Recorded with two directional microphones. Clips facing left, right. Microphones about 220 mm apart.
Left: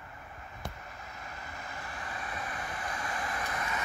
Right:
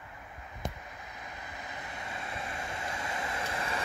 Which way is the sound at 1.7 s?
20° right (ahead or behind).